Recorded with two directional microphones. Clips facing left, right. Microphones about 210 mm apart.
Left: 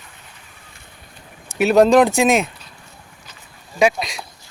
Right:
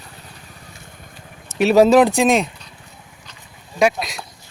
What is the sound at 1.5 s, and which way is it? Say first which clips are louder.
Speech: right 1 dB; 5° left (ahead or behind).